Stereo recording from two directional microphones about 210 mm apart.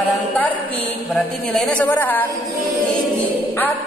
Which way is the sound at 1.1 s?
5° left (ahead or behind).